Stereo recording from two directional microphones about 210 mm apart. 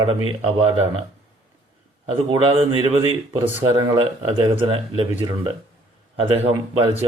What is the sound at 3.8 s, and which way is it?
Speech, 25° right (ahead or behind).